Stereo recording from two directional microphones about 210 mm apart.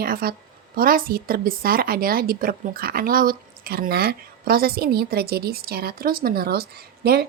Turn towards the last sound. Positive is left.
turn(degrees=-45)  # may be behind; listen again after turning